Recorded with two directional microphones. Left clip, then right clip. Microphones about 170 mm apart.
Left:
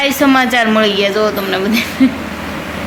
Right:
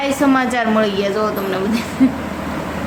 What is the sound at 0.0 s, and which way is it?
A woman's voice, 25° left (ahead or behind).